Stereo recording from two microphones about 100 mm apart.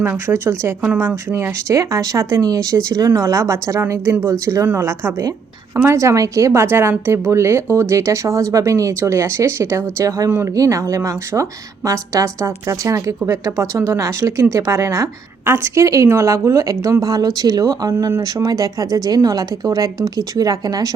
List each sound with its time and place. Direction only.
0.0 s speech: 25° right (ahead or behind)
10.2 s speech: 20° right (ahead or behind)
10.5 s speech: 35° right (ahead or behind)
17.9 s speech: 25° right (ahead or behind)
18.2 s speech: 40° right (ahead or behind)